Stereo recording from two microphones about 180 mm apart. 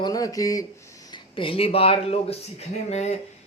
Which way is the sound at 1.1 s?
30° left (ahead or behind).